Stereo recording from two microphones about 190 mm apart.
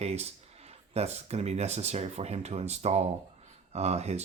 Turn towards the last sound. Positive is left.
turn(degrees=-35)  # may be behind; listen again after turning